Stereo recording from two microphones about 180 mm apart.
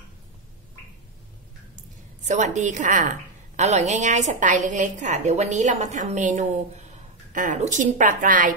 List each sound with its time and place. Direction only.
1.8 s a woman's voice: 40° right (ahead or behind)